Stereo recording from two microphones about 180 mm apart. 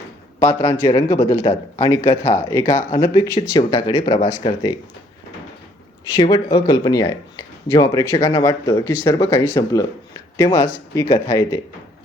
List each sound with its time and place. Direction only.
0.4 s speech: 25° left (ahead or behind)
2.0 s speech: 35° left (ahead or behind)
2.3 s speech: 20° left (ahead or behind)
6.1 s speech: 25° left (ahead or behind)